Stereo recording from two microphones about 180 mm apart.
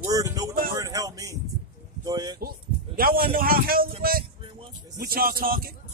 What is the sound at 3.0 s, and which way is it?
Speech, 55° right (ahead or behind).